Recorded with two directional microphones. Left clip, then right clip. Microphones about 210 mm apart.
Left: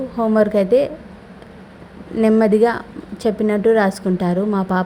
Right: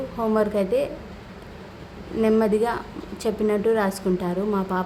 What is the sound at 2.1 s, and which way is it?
A woman's voice, 20° left (ahead or behind).